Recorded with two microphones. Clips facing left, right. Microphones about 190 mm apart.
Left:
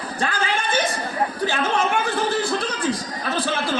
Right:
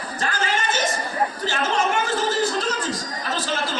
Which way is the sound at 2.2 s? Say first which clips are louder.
Even; 60° left (ahead or behind).